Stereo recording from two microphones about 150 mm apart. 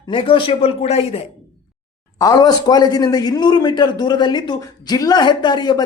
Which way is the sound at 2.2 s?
25° left (ahead or behind).